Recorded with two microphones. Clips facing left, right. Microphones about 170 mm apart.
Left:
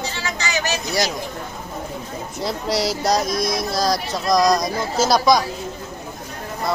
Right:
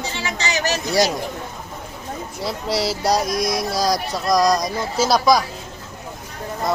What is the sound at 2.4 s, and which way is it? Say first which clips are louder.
Speech: left 1 dB; 5° right (ahead or behind).